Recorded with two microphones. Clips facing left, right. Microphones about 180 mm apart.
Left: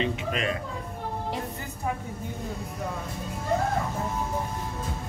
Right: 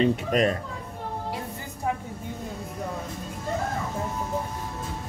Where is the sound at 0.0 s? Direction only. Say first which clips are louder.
Right 6 dB; 45° right (ahead or behind).